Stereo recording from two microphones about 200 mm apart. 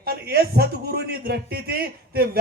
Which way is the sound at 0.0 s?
50° right (ahead or behind).